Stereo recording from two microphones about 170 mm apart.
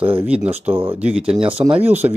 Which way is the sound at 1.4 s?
30° right (ahead or behind).